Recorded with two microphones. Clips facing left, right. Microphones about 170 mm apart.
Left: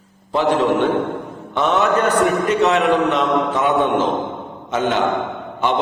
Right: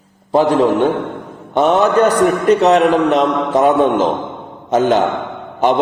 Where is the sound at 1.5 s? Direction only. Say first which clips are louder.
Right 5 dB; 40° right (ahead or behind).